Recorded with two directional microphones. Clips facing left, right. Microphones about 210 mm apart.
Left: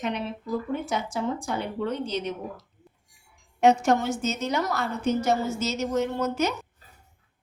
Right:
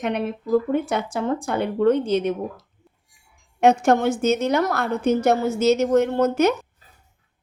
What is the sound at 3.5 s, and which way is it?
Speech, 55° right (ahead or behind).